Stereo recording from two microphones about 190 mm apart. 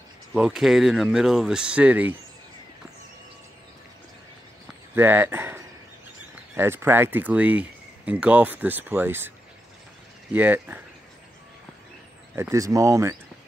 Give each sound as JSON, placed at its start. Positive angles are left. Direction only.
{"t": 0.3, "sound": "speech", "side_deg": -5}
{"t": 4.9, "sound": "speech", "side_deg": -10}
{"t": 10.3, "sound": "speech", "side_deg": -10}
{"t": 12.4, "sound": "speech", "side_deg": -15}